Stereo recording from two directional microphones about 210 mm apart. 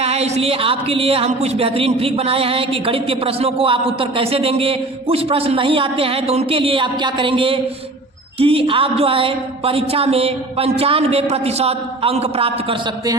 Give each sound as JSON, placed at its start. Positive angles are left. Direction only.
{"t": 0.0, "sound": "speech", "side_deg": -30}